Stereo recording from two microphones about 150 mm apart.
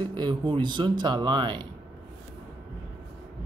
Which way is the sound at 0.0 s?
30° right (ahead or behind).